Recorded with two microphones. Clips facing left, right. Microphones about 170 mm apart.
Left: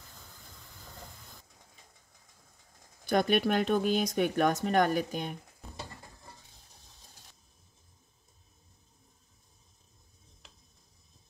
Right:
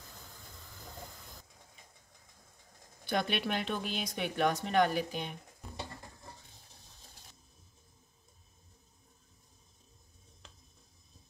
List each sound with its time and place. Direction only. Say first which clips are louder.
3.1 s speech: left 7 dB; 45° left (ahead or behind)